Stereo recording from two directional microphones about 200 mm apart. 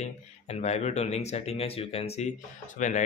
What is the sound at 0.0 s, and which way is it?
Speech, 35° left (ahead or behind).